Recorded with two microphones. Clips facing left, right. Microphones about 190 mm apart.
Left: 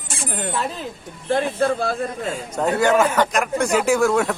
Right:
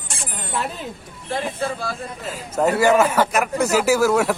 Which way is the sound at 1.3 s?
55° left (ahead or behind).